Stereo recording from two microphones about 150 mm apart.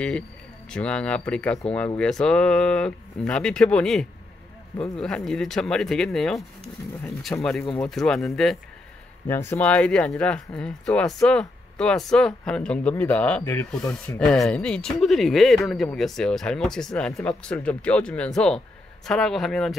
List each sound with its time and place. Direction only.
0.7 s speech: 5° left (ahead or behind)
9.3 s speech: 15° left (ahead or behind)